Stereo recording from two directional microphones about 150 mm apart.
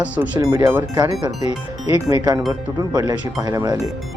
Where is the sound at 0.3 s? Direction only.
20° right (ahead or behind).